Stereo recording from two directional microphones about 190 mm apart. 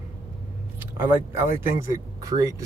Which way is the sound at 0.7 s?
10° right (ahead or behind).